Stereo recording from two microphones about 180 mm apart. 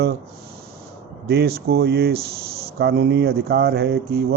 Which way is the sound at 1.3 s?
60° right (ahead or behind).